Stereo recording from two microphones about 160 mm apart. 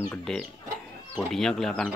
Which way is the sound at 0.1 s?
5° left (ahead or behind).